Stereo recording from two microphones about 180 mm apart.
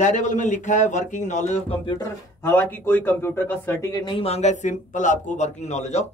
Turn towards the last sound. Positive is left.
turn(degrees=40)  # may be behind; listen again after turning